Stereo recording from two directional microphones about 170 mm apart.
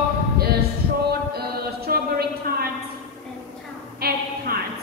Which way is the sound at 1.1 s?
65° right (ahead or behind).